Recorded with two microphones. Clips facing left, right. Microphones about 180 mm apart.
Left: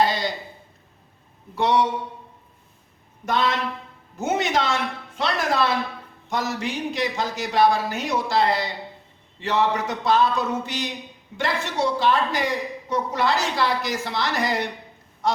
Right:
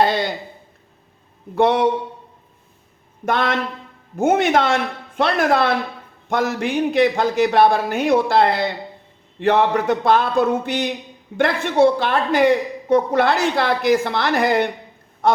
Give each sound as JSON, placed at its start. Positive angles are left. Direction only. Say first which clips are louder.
{"t": 0.0, "sound": "a sound", "louder": "right 4 dB", "side_deg": -55}
{"t": 1.5, "sound": "a woman's voice", "louder": "right 5 dB", "side_deg": -55}
{"t": 3.2, "sound": "a woman's voice", "louder": "right 3 dB", "side_deg": -55}
{"t": 15.2, "sound": "honk", "louder": "right 6 dB", "side_deg": -55}